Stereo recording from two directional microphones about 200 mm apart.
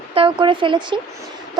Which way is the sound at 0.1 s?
25° right (ahead or behind).